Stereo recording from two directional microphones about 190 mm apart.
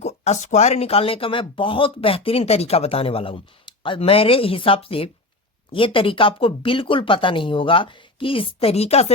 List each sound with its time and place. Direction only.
0.0 s speech: 35° left (ahead or behind)